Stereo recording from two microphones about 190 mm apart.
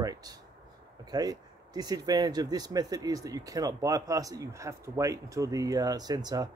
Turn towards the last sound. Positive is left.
turn(degrees=-20)  # may be behind; listen again after turning